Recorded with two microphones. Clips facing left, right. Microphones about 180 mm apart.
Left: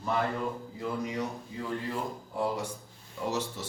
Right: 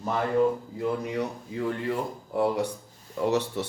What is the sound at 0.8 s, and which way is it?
Speech, 60° right (ahead or behind).